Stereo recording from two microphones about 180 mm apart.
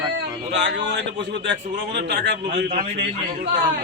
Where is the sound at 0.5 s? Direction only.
80° right.